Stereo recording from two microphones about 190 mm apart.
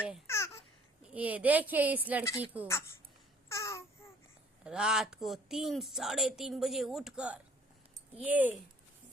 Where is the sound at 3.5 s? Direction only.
15° left (ahead or behind).